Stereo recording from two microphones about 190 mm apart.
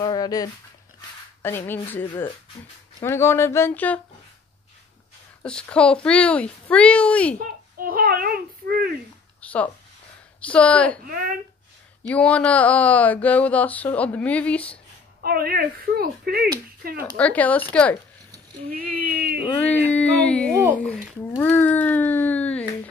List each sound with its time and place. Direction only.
0.0 s speech: 20° left (ahead or behind)
3.0 s speech: 15° left (ahead or behind)
5.4 s speech: 5° left (ahead or behind)
7.3 s babbling: 50° right (ahead or behind)
9.4 s a sound: 5° left (ahead or behind)
10.4 s speech: 5° left (ahead or behind)
11.1 s speech: 50° right (ahead or behind)
12.1 s speech: 5° left (ahead or behind)
15.2 s speech: 55° right (ahead or behind)
17.2 s speech: 10° left (ahead or behind)
18.7 s speech: 50° right (ahead or behind)
19.9 s speech: 5° left (ahead or behind)